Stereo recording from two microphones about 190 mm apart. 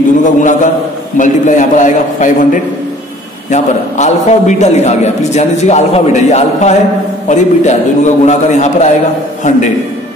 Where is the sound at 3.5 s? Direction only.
40° left (ahead or behind).